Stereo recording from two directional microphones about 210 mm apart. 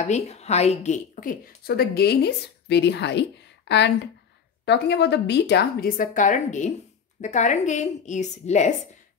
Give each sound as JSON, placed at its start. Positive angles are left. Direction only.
{"t": 0.0, "sound": "a woman's voice", "side_deg": 30}